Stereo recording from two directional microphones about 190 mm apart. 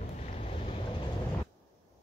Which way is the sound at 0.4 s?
30° left (ahead or behind).